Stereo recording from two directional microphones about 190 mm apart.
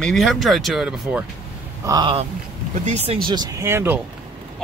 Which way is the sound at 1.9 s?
25° right (ahead or behind).